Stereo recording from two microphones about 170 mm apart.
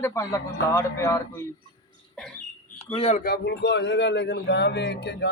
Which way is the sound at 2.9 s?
35° left (ahead or behind).